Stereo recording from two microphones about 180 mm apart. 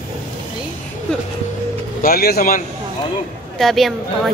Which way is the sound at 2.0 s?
55° left (ahead or behind).